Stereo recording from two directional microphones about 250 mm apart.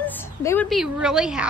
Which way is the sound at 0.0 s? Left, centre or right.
Centre.